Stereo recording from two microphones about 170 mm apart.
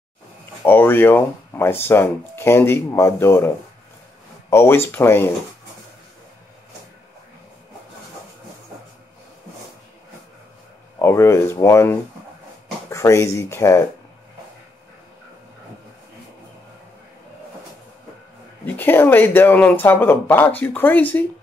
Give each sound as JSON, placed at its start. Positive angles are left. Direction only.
{"t": 0.7, "sound": "speech", "side_deg": 10}
{"t": 11.0, "sound": "speech", "side_deg": 15}
{"t": 18.8, "sound": "speech", "side_deg": 10}